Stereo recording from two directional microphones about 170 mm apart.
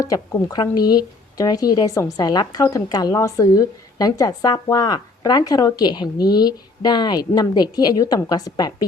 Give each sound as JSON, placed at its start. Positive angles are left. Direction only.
{"t": 0.0, "sound": "speech", "side_deg": 20}